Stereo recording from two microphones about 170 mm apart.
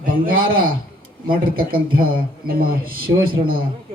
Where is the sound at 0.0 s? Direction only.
55° right (ahead or behind).